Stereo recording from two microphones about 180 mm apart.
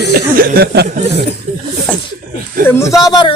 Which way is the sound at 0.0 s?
55° right (ahead or behind).